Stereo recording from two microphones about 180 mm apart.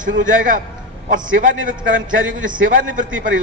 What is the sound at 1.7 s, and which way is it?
Speech, 50° right (ahead or behind).